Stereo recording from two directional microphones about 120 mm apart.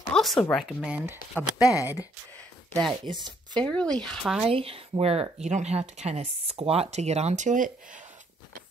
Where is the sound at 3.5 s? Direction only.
10° left (ahead or behind).